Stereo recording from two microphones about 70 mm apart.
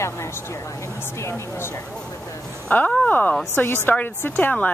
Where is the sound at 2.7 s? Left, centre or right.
Left.